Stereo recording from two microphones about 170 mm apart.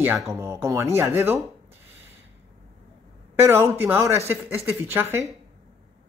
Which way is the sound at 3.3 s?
15° right (ahead or behind).